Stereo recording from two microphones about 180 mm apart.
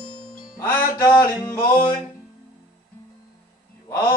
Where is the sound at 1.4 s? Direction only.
25° left (ahead or behind).